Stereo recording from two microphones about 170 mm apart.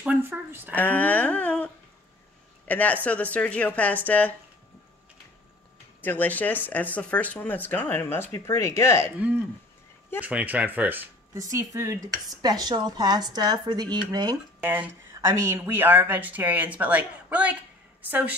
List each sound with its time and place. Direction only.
0.0 s a sound: 10° right (ahead or behind)
0.7 s speech: 10° left (ahead or behind)
5.9 s speech: 10° left (ahead or behind)
10.2 s speech: 10° right (ahead or behind)
11.5 s dishes: 20° right (ahead or behind)
14.6 s speech: 10° right (ahead or behind)